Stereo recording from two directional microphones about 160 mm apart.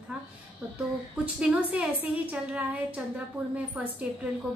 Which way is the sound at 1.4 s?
10° right (ahead or behind).